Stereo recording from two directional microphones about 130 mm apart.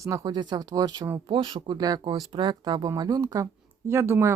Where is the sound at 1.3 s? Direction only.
40° right (ahead or behind).